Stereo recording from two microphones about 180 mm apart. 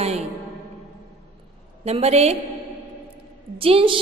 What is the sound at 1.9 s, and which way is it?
Speech, 35° right (ahead or behind).